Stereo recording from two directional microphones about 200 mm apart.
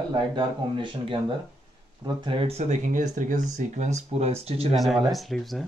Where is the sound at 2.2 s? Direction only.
30° right (ahead or behind).